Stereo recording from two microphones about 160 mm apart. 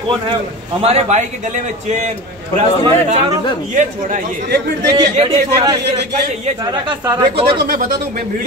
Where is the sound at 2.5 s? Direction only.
40° right (ahead or behind).